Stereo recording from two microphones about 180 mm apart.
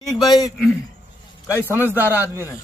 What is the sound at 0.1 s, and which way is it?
Speech, 20° left (ahead or behind).